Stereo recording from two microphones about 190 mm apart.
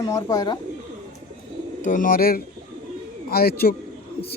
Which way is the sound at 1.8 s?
45° left (ahead or behind).